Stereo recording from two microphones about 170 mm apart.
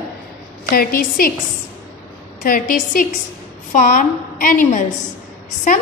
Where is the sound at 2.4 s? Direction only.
55° left (ahead or behind).